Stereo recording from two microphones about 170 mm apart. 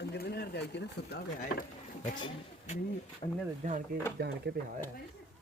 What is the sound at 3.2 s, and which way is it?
Speech, 35° left (ahead or behind).